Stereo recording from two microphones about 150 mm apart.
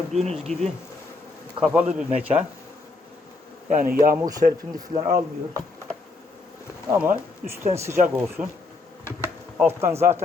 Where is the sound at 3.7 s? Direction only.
65° right (ahead or behind).